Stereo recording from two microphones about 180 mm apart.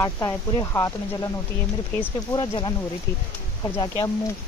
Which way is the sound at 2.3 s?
25° left (ahead or behind).